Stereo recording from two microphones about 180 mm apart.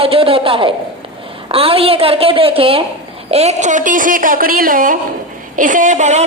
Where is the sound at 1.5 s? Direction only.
30° right (ahead or behind).